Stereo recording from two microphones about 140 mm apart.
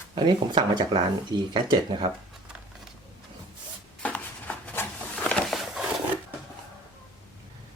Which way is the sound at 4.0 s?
10° left (ahead or behind).